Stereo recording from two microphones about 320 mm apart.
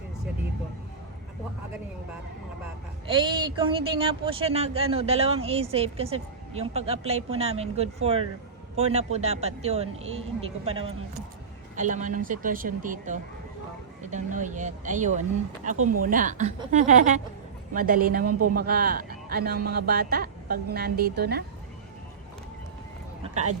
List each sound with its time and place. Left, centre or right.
3.1 s a man's voice: centre
18.3 s speech: right
18.5 s a man's voice: right
23.2 s speech: right